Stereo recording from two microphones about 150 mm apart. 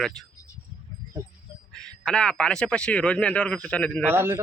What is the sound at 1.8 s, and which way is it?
Speech, 5° left (ahead or behind).